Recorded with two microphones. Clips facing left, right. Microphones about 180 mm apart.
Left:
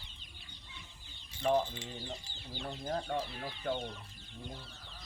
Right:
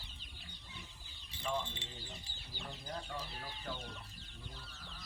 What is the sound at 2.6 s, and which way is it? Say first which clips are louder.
Speech: left 8 dB; 45° left (ahead or behind).